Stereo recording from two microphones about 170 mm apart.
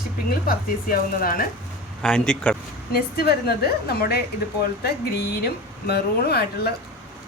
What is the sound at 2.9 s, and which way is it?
Speech, 65° left (ahead or behind).